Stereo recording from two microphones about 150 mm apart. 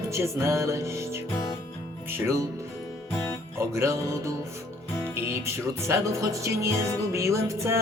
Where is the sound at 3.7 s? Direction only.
20° right (ahead or behind).